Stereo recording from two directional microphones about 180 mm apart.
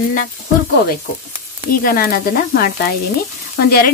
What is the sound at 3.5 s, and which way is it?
Speech, 55° left (ahead or behind).